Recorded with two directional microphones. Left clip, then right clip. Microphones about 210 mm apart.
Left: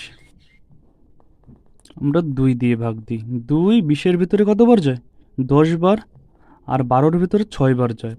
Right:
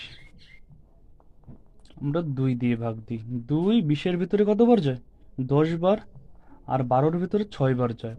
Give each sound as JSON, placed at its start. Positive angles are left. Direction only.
{"t": 1.8, "sound": "speech", "side_deg": 35}